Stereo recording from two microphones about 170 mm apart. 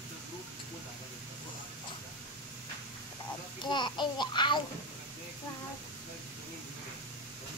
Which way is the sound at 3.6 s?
25° left (ahead or behind).